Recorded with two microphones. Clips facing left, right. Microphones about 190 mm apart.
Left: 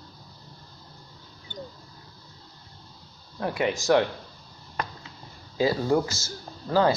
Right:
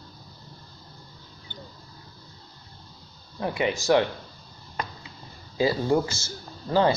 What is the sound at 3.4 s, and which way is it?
Speech, centre (ahead or behind).